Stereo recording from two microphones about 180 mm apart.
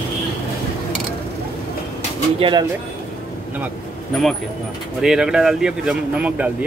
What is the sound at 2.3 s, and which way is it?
Speech, 30° right (ahead or behind).